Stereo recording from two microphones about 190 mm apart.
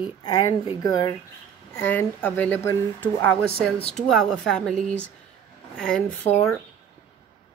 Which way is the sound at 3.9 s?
Centre (ahead or behind).